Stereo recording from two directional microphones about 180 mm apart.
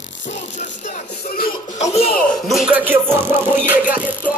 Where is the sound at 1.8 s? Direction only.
35° left (ahead or behind).